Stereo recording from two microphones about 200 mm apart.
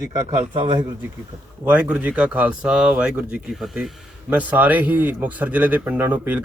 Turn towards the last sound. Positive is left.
turn(degrees=-5)  # may be behind; listen again after turning